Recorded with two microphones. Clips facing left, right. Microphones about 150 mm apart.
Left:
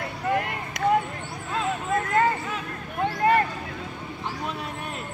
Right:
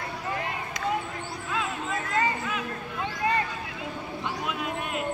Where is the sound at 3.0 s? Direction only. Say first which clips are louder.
Left 7 dB; 55° left (ahead or behind).